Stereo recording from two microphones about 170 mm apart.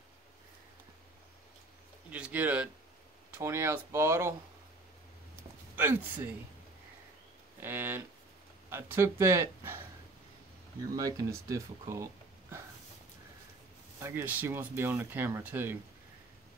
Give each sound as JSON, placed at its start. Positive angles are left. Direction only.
{"t": 2.0, "sound": "speech", "side_deg": -5}
{"t": 5.3, "sound": "a sound", "side_deg": -10}
{"t": 7.6, "sound": "speech", "side_deg": -10}
{"t": 10.9, "sound": "speech", "side_deg": -20}
{"t": 13.9, "sound": "speech", "side_deg": -15}